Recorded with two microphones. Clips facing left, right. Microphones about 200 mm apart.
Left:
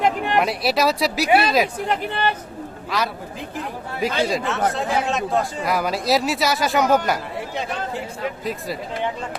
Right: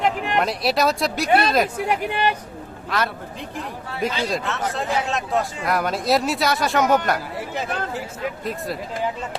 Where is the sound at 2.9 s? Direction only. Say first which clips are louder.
Even; centre (ahead or behind).